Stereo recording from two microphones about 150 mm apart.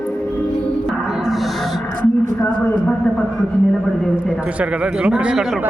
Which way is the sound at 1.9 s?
65° right (ahead or behind).